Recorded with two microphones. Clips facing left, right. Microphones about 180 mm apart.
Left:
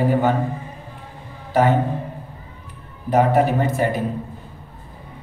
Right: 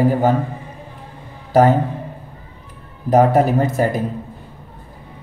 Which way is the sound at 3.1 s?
40° right (ahead or behind).